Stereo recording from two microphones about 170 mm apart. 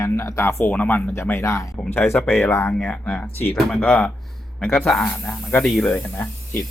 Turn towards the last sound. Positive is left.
turn(degrees=10)  # may be behind; listen again after turning